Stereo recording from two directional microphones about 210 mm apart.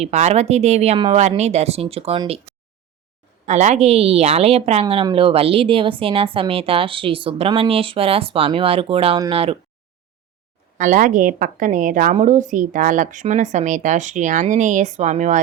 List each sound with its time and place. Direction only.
0.0 s a woman's voice: 30° right (ahead or behind)
3.4 s a woman's voice: 35° right (ahead or behind)
10.8 s a woman's voice: 35° right (ahead or behind)